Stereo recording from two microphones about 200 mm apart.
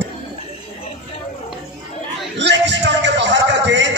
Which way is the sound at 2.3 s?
60° right (ahead or behind).